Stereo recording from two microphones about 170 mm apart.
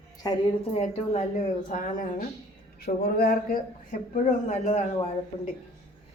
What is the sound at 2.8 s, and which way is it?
Speech, 60° left (ahead or behind).